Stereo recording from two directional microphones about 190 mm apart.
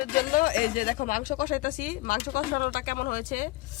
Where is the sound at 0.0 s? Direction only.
45° left (ahead or behind).